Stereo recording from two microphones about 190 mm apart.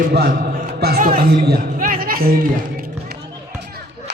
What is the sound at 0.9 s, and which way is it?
Speech, 45° right (ahead or behind).